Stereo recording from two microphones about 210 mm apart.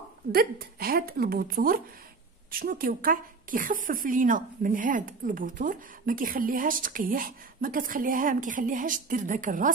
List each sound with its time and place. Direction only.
0.3 s a woman's voice: 45° right (ahead or behind)